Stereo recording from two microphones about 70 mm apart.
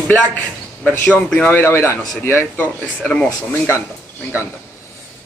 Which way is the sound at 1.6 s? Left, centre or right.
Left.